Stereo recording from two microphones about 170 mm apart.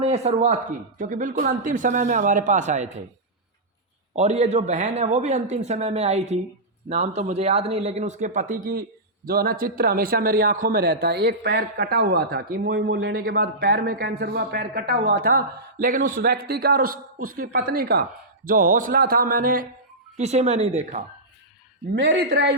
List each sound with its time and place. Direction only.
0.0 s speech: 40° right (ahead or behind)
4.1 s a man's voice: 40° right (ahead or behind); by 19.6 s 55° right (ahead or behind)
20.1 s speech: 40° right (ahead or behind)
21.9 s a man's voice: 90° right